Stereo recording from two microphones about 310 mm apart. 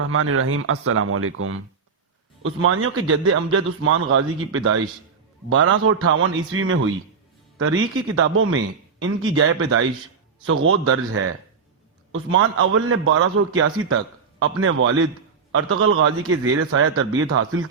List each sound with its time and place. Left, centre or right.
0.0 s a man's voice: right